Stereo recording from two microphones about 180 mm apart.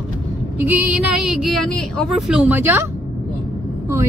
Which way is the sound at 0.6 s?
10° right (ahead or behind).